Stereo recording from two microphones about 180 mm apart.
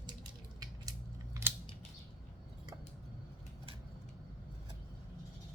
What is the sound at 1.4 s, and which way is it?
Scissors, 15° right (ahead or behind).